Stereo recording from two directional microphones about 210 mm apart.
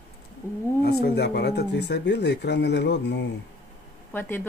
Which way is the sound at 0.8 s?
50° left (ahead or behind).